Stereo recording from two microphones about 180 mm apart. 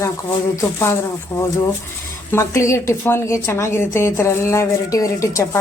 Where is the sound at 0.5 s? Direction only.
15° left (ahead or behind).